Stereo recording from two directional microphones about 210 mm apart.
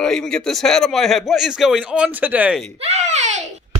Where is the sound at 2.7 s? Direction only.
30° right (ahead or behind).